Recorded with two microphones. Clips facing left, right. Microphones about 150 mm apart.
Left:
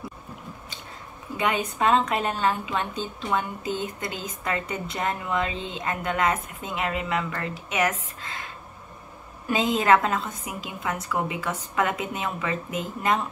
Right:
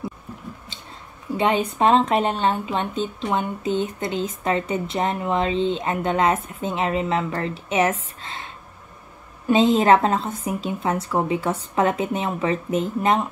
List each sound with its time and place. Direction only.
1.3 s a woman's voice: 25° right (ahead or behind)
9.5 s a woman's voice: 25° right (ahead or behind)